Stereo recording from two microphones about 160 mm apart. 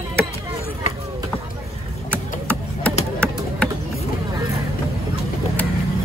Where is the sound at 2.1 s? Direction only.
10° left (ahead or behind).